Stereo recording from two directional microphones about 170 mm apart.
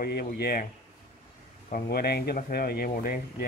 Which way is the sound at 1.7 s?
65° left (ahead or behind).